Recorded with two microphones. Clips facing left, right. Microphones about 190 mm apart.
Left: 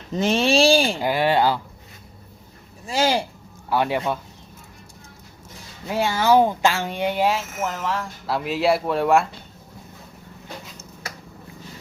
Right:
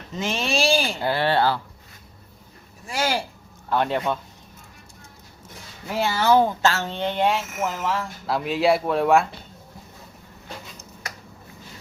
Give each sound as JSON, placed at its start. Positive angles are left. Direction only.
{"t": 0.2, "sound": "speech", "side_deg": 35}
{"t": 0.9, "sound": "speech", "side_deg": 15}
{"t": 2.8, "sound": "speech", "side_deg": 25}
{"t": 3.7, "sound": "speech", "side_deg": 5}
{"t": 5.9, "sound": "speech", "side_deg": 15}